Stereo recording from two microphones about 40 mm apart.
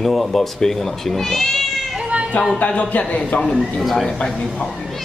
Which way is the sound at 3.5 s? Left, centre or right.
Centre.